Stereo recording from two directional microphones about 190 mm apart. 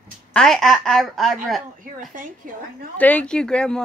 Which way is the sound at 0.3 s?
5° left (ahead or behind).